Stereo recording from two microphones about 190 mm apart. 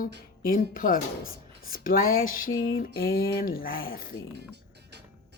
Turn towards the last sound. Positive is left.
turn(degrees=50)  # may be behind; listen again after turning